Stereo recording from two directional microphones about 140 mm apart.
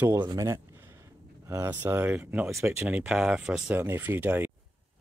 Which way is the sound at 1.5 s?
15° right (ahead or behind).